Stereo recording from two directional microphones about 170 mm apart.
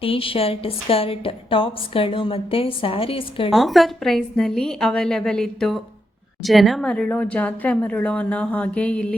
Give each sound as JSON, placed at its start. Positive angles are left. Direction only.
{"t": 0.0, "sound": "a woman's voice", "side_deg": 35}
{"t": 3.5, "sound": "a woman's voice", "side_deg": 0}